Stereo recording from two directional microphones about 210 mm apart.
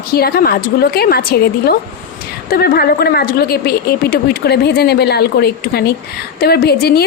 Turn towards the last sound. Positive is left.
turn(degrees=50)  # may be behind; listen again after turning